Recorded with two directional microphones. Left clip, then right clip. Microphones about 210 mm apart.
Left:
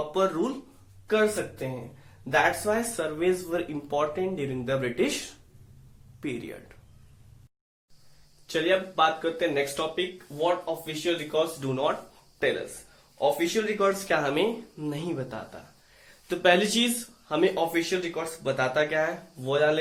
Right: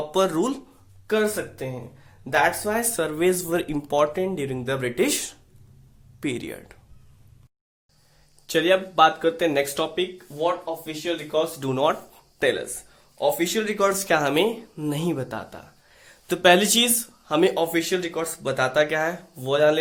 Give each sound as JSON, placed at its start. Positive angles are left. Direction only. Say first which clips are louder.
{"t": 0.1, "sound": "speech", "louder": "right 6 dB", "side_deg": -50}
{"t": 6.1, "sound": "speech", "louder": "right 5 dB", "side_deg": -50}
{"t": 8.4, "sound": "speech", "louder": "right 5 dB", "side_deg": -55}